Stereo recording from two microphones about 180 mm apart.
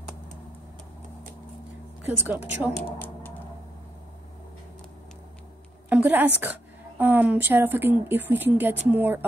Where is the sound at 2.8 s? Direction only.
10° left (ahead or behind).